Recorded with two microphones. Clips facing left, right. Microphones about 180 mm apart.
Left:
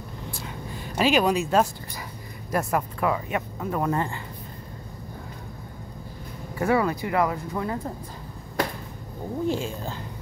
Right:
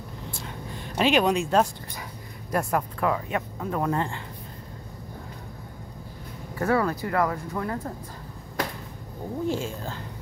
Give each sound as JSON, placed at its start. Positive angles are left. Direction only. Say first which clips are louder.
{"t": 0.4, "sound": "speech", "louder": "left 1 dB", "side_deg": 5}
{"t": 6.5, "sound": "speech", "louder": "left 1 dB", "side_deg": 10}
{"t": 9.5, "sound": "speech", "louder": "left 1 dB", "side_deg": 15}